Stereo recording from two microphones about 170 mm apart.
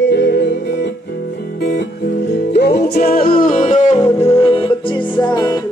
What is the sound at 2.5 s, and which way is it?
Music, 75° left (ahead or behind).